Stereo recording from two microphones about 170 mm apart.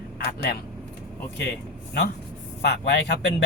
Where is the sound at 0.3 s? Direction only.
70° left (ahead or behind).